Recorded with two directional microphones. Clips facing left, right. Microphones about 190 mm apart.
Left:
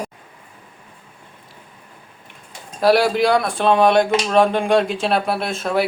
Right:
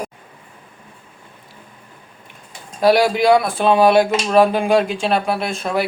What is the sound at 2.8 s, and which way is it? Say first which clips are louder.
Speech: right 1 dB; centre (ahead or behind).